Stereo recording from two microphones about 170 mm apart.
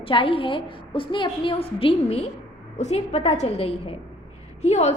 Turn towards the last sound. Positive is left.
turn(degrees=40)  # may be behind; listen again after turning